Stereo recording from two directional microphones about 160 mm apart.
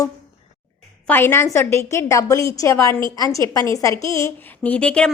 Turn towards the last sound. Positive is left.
turn(degrees=5)  # may be behind; listen again after turning